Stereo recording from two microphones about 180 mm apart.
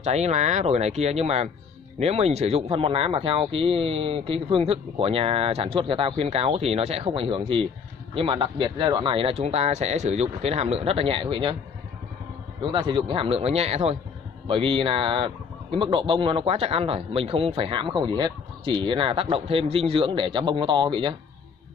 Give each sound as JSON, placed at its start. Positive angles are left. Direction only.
{"t": 0.0, "sound": "speech", "side_deg": -40}
{"t": 12.6, "sound": "speech", "side_deg": -25}